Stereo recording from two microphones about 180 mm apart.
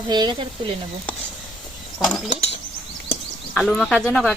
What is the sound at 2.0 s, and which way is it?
Speech, centre (ahead or behind).